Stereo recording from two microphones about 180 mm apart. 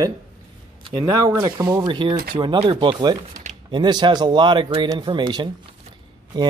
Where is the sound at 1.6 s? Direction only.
15° right (ahead or behind).